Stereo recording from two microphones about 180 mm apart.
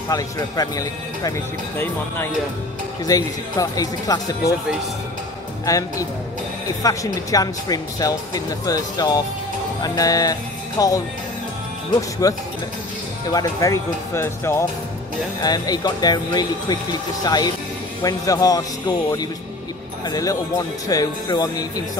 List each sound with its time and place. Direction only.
0.1 s speech: 20° left (ahead or behind)
3.1 s speech: 20° left (ahead or behind)
5.7 s speech: 20° left (ahead or behind)
12.2 s speech: 20° left (ahead or behind)